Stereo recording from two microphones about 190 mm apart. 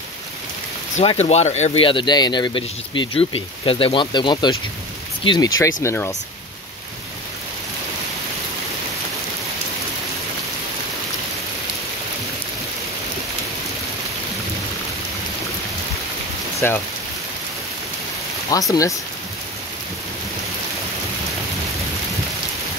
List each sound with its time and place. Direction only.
0.9 s speech: 35° left (ahead or behind); by 6.1 s 15° left (ahead or behind)
16.5 s speech: 10° left (ahead or behind)
18.5 s speech: 20° left (ahead or behind)